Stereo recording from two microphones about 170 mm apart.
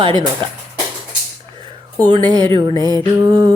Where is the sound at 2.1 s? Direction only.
25° right (ahead or behind).